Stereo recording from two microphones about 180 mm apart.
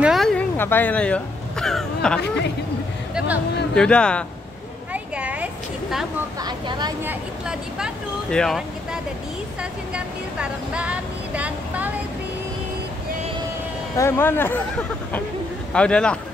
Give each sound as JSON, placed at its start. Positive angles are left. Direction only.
{"t": 0.0, "sound": "speech", "side_deg": 0}
{"t": 3.7, "sound": "speech", "side_deg": 5}
{"t": 4.9, "sound": "a sound", "side_deg": -5}
{"t": 6.4, "sound": "speech", "side_deg": -25}
{"t": 7.1, "sound": "speech", "side_deg": -5}
{"t": 13.9, "sound": "speech", "side_deg": 15}